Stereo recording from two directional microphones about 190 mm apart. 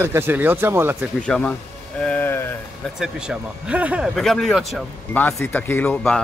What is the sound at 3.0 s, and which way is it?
A man's voice, 5° right (ahead or behind).